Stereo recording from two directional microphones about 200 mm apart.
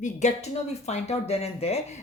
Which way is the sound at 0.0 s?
35° left (ahead or behind).